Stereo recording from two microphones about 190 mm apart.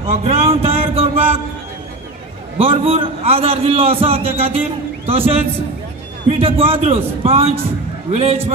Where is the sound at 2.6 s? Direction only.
30° right (ahead or behind).